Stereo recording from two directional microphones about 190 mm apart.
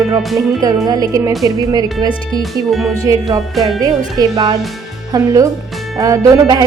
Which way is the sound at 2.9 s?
15° right (ahead or behind).